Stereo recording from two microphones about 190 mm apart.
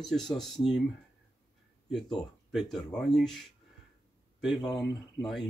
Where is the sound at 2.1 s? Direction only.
Centre (ahead or behind).